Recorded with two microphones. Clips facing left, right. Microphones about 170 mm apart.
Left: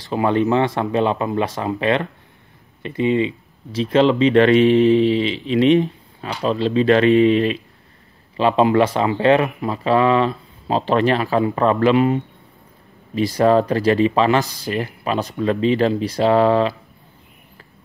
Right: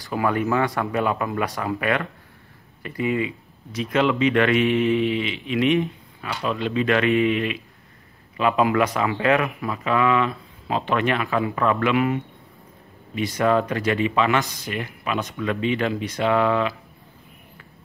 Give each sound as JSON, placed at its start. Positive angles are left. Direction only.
{"t": 0.0, "sound": "speech", "side_deg": 25}